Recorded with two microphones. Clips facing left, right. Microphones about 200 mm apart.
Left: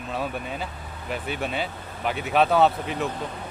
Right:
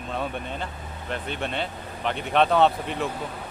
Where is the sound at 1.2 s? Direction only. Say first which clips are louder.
Left 2 dB; 5° left (ahead or behind).